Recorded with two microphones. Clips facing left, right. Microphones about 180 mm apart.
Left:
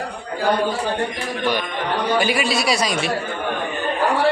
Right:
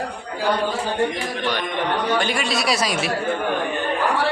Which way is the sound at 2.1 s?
5° left (ahead or behind).